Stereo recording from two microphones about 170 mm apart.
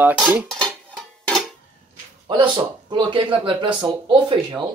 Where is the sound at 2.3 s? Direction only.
25° right (ahead or behind).